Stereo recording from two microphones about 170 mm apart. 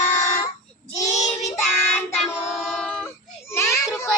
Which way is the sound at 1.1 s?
40° left (ahead or behind).